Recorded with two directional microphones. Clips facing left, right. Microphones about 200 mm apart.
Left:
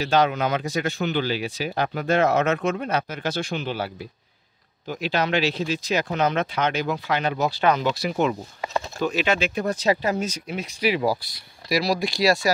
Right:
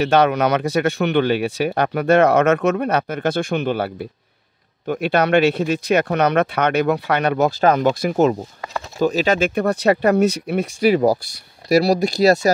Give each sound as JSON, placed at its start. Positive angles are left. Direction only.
{"t": 0.0, "sound": "speech", "side_deg": -65}
{"t": 9.6, "sound": "speech", "side_deg": -60}